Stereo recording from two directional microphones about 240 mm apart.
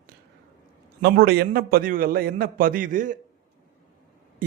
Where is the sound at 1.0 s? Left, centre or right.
Right.